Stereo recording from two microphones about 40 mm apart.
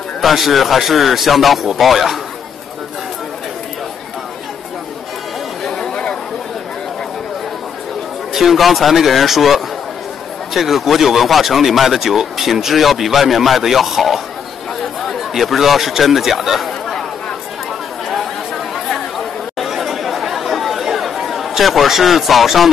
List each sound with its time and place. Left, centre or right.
0.2 s speech: centre
8.3 s speech: centre
18.0 s chatter: centre